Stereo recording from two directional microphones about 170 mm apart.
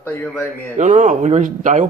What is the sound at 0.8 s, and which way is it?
A man's voice, 50° right (ahead or behind).